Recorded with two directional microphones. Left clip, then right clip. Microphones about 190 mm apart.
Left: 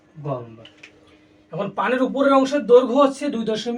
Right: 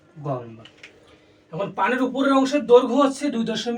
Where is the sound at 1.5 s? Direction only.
10° left (ahead or behind).